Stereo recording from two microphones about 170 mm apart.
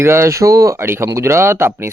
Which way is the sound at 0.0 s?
15° right (ahead or behind).